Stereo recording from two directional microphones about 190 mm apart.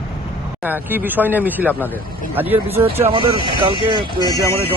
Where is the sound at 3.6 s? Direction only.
25° right (ahead or behind).